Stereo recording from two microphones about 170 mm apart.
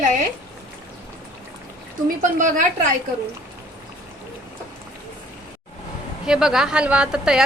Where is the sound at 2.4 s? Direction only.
50° right (ahead or behind).